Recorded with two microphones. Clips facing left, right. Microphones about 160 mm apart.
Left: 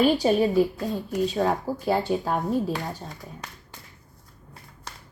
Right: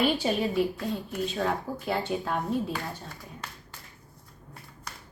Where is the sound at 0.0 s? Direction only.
40° left (ahead or behind).